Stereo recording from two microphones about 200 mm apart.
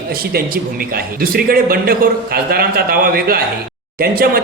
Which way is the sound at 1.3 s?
45° right (ahead or behind).